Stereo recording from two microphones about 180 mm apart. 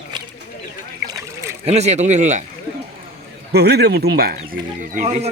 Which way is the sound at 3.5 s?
65° right (ahead or behind).